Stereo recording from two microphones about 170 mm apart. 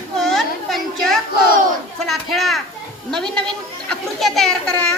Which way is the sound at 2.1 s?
Centre (ahead or behind).